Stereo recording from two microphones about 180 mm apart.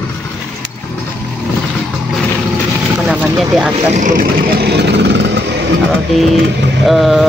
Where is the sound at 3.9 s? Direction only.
50° right (ahead or behind); by 5.2 s 70° right (ahead or behind).